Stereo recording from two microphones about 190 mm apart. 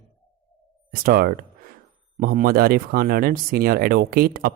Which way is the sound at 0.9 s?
50° right (ahead or behind).